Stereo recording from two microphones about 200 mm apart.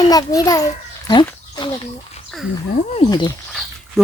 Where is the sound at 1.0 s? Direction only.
25° left (ahead or behind).